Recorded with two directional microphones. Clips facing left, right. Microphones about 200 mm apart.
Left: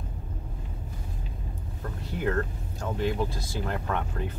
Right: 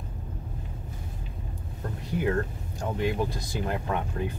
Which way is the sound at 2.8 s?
15° right (ahead or behind).